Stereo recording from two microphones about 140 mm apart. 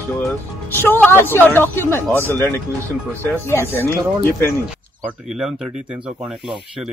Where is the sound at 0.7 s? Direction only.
15° left (ahead or behind).